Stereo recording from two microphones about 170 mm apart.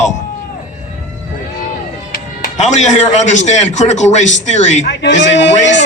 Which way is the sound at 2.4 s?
45° left (ahead or behind).